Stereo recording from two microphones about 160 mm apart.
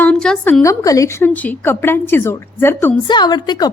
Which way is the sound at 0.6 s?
20° left (ahead or behind).